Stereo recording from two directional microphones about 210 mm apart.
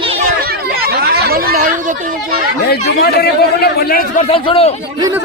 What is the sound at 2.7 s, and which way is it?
Speech, 50° left (ahead or behind).